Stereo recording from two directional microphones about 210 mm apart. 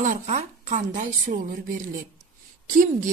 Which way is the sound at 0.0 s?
35° right (ahead or behind).